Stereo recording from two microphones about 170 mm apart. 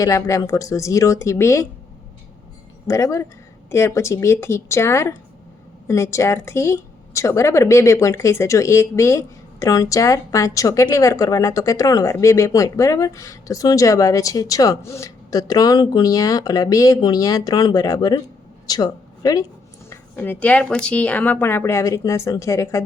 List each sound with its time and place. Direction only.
0.0 s speech: 20° left (ahead or behind)
2.8 s a woman's voice: 20° left (ahead or behind)
19.9 s speech: 10° left (ahead or behind)